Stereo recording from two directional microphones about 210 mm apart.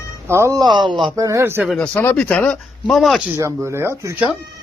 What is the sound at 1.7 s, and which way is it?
Speech, 5° left (ahead or behind).